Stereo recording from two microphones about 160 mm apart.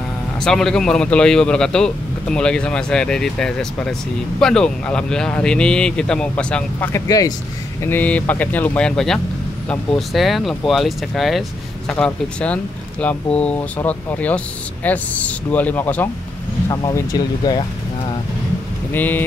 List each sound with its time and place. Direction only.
0.4 s a man's voice: 5° left (ahead or behind); by 7.3 s 20° left (ahead or behind)
7.8 s a man's voice: 10° left (ahead or behind)
18.9 s speech: 10° left (ahead or behind)